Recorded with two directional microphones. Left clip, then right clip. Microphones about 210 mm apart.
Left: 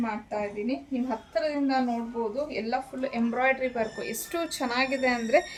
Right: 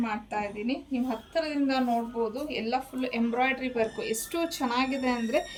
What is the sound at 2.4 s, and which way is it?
A woman's voice, 20° left (ahead or behind).